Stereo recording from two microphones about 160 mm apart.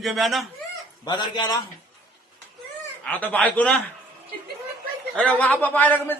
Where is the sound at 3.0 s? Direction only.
10° left (ahead or behind).